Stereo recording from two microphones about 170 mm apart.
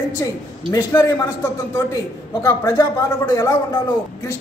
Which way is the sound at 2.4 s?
20° left (ahead or behind).